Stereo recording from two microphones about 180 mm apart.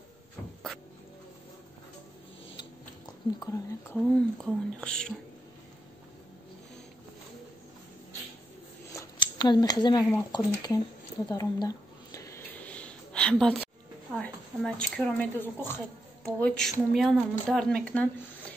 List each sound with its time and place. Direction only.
3.9 s speech: centre (ahead or behind)
8.9 s speech: 25° left (ahead or behind)
11.2 s a sound: 20° left (ahead or behind); by 13.7 s 5° left (ahead or behind)
14.1 s a woman's voice: 5° left (ahead or behind)